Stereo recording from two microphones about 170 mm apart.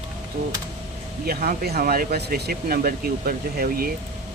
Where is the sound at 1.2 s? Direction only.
60° right (ahead or behind).